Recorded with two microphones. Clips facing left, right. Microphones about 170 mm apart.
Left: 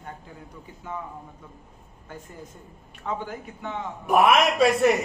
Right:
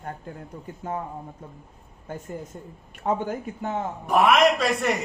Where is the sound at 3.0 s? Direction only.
45° right (ahead or behind).